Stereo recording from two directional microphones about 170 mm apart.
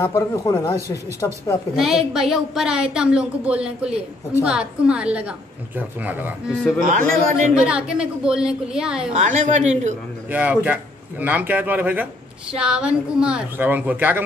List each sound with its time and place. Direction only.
0.0 s speech: 20° left (ahead or behind)
1.8 s a woman's voice: centre (ahead or behind)
6.8 s a woman's voice: 50° right (ahead or behind)
7.5 s a woman's voice: 5° right (ahead or behind)
9.1 s a woman's voice: 45° right (ahead or behind)
10.3 s a man's voice: 10° right (ahead or behind)